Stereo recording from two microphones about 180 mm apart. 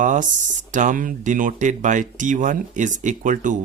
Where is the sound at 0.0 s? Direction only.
45° right (ahead or behind).